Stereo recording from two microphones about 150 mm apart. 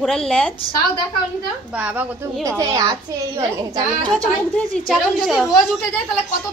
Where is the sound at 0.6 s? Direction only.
35° left (ahead or behind).